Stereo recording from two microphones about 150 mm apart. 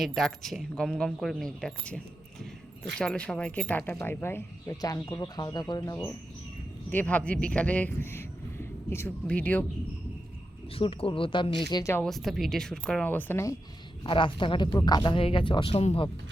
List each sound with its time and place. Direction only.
0.0 s speech: centre (ahead or behind)
3.0 s speech: 5° left (ahead or behind); by 6.1 s 25° left (ahead or behind)
6.9 s speech: 10° left (ahead or behind)
10.8 s speech: 35° left (ahead or behind)
11.8 s speech: 20° left (ahead or behind)
12.0 s speech: centre (ahead or behind); by 13.6 s 20° left (ahead or behind)
14.0 s speech: 35° left (ahead or behind)